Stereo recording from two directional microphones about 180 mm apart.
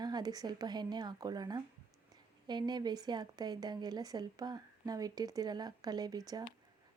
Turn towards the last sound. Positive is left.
turn(degrees=-20)  # may be behind; listen again after turning